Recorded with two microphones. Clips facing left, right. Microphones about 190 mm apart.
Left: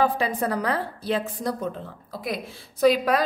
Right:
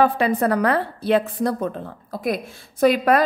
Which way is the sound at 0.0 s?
60° right (ahead or behind).